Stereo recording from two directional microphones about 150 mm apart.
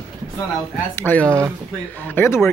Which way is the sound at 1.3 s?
15° right (ahead or behind).